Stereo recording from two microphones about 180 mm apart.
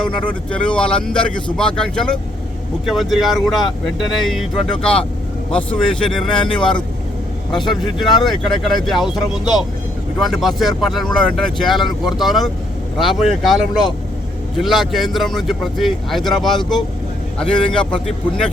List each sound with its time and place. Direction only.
0.0 s speech: 5° left (ahead or behind)
7.5 s speech: 25° left (ahead or behind)
8.2 s speech: centre (ahead or behind)
9.3 s speech: 20° left (ahead or behind)
10.2 s speech: centre (ahead or behind)